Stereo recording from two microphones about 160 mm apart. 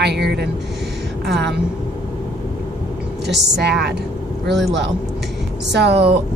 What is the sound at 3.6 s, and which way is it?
Speech, 90° right.